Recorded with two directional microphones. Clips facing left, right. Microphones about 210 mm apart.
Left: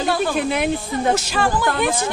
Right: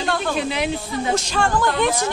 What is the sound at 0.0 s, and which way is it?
Speech, 5° left (ahead or behind).